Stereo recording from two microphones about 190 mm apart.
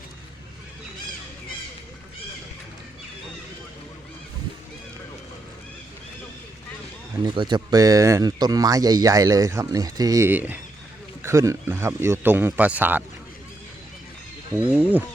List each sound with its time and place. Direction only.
7.3 s speech: 25° right (ahead or behind)
14.5 s speech: 10° right (ahead or behind)